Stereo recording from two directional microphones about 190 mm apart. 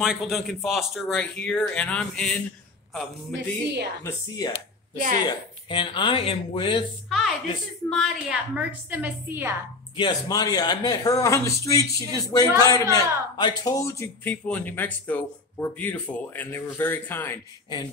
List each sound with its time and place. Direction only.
0.0 s speech: centre (ahead or behind)
4.0 s speech: 10° left (ahead or behind)
4.9 s a woman's voice: 45° right (ahead or behind)
5.2 s speech: 25° left (ahead or behind)
7.1 s a sound: centre (ahead or behind)
7.9 s a woman's voice: centre (ahead or behind)
9.9 s speech: 20° left (ahead or behind)